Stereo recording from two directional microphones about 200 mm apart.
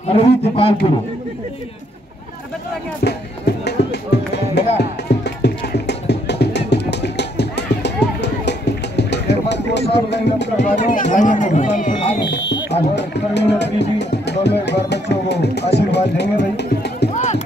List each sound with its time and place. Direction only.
0.1 s a man's voice: 30° left (ahead or behind)
3.0 s speech: 55° left (ahead or behind)
4.6 s music: 55° left (ahead or behind)
10.0 s speech: 60° left (ahead or behind)
10.6 s speech: 40° left (ahead or behind)
12.9 s speech: 60° left (ahead or behind)
17.1 s run: 35° left (ahead or behind)